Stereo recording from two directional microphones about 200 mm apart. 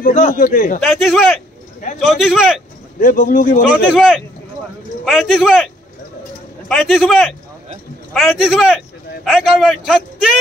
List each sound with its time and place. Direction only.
0.0 s a man's voice: 40° left (ahead or behind)
0.8 s a man's voice: centre (ahead or behind)
3.0 s a man's voice: 45° left (ahead or behind)
3.7 s a man's voice: centre (ahead or behind)
6.7 s a man's voice: centre (ahead or behind)